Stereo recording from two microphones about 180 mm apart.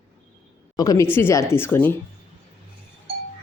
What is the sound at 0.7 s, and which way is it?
Speech, 20° left (ahead or behind).